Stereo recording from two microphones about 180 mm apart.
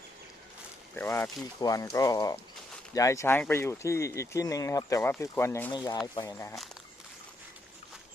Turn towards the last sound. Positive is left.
turn(degrees=15)  # may be behind; listen again after turning